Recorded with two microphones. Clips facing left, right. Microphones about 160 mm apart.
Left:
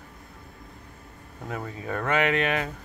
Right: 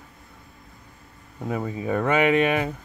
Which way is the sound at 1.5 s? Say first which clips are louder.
Right 6 dB; 15° right (ahead or behind).